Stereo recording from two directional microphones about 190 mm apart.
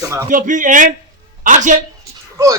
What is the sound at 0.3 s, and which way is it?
A man's voice, 40° right (ahead or behind).